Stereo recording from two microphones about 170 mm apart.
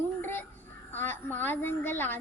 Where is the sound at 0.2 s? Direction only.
10° left (ahead or behind).